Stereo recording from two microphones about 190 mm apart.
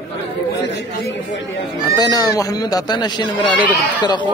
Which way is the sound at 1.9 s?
20° left (ahead or behind).